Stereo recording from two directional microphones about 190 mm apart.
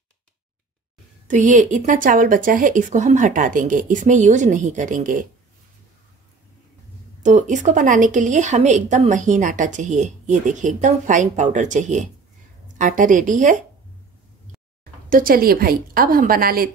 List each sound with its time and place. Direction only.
1.2 s speech: 40° right (ahead or behind)
7.2 s speech: 40° right (ahead or behind)
15.0 s speech: 50° right (ahead or behind)